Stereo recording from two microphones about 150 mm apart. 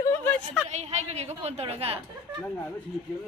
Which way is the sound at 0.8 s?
50° right (ahead or behind).